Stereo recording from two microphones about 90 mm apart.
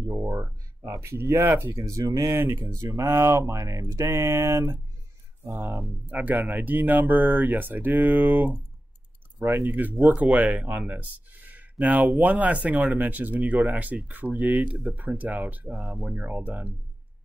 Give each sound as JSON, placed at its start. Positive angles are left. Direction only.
{"t": 0.0, "sound": "speech", "side_deg": -35}
{"t": 2.6, "sound": "speech", "side_deg": -40}
{"t": 5.6, "sound": "speech", "side_deg": 0}
{"t": 6.0, "sound": "speech", "side_deg": -20}
{"t": 9.7, "sound": "speech", "side_deg": -20}
{"t": 15.7, "sound": "speech", "side_deg": 0}
{"t": 16.2, "sound": "speech", "side_deg": -20}